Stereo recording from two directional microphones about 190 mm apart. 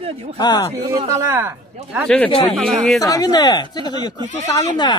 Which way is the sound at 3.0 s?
20° left (ahead or behind).